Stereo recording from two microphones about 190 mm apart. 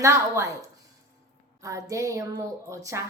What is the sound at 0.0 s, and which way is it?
Speech, 15° right (ahead or behind).